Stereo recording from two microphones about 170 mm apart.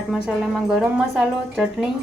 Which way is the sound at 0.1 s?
Centre (ahead or behind).